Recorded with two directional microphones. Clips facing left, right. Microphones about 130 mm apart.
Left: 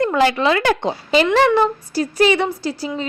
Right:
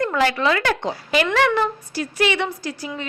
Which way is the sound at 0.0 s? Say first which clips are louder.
Left 4 dB; 25° left (ahead or behind).